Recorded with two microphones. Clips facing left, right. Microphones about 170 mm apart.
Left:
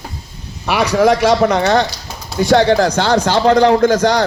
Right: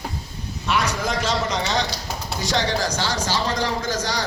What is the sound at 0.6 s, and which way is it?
A man's voice, 65° left (ahead or behind).